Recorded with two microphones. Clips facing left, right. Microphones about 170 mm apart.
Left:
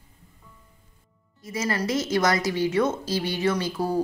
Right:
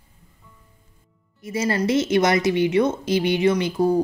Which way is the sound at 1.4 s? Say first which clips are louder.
Right 5 dB; 25° right (ahead or behind).